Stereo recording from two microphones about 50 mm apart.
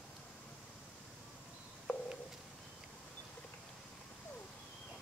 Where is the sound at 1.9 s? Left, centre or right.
Left.